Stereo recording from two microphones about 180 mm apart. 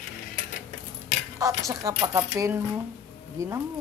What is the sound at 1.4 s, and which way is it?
Speech, 20° right (ahead or behind).